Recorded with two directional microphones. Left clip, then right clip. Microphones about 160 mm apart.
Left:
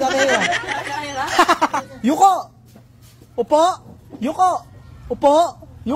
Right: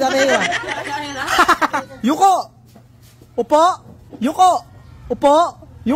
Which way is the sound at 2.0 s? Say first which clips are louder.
Left 1 dB; 20° right (ahead or behind).